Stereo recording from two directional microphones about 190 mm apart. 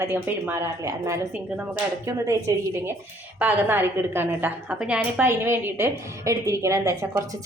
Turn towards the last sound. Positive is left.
turn(degrees=-15)  # may be behind; listen again after turning